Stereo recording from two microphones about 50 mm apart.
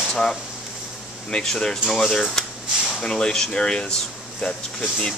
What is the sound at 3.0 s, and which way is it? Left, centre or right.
Speech, centre.